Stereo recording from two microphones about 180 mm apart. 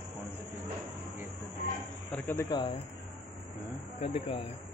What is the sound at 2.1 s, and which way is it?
Speech, 10° left (ahead or behind).